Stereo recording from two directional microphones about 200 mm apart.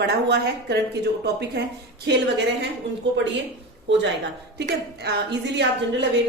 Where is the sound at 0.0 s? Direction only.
55° right (ahead or behind).